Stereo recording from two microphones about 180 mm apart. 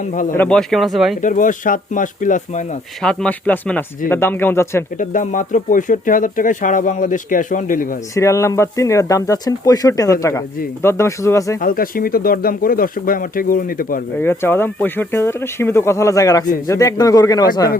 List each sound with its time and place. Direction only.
0.0 s speech: 45° left (ahead or behind)
0.3 s speech: 5° left (ahead or behind)
1.2 s speech: 45° left (ahead or behind)
3.0 s speech: 5° left (ahead or behind)
4.9 s speech: 45° left (ahead or behind)
8.1 s speech: 15° left (ahead or behind)
11.6 s speech: 55° left (ahead or behind)
14.2 s speech: 10° left (ahead or behind)